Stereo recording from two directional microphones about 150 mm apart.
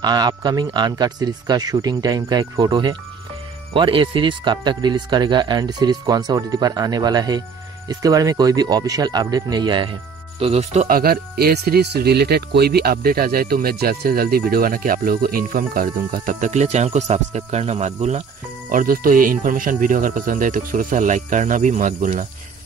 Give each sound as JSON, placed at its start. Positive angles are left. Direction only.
{"t": 0.0, "sound": "speech", "side_deg": -25}
{"t": 10.4, "sound": "speech", "side_deg": -45}
{"t": 10.9, "sound": "speech", "side_deg": -80}
{"t": 18.7, "sound": "speech", "side_deg": -65}